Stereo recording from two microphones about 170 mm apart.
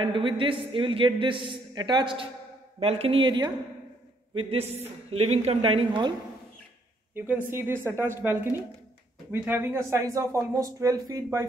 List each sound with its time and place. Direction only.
0.0 s a man's voice: 30° right (ahead or behind)
7.2 s speech: 10° right (ahead or behind)